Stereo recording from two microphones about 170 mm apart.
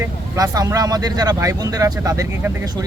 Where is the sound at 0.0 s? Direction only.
20° right (ahead or behind).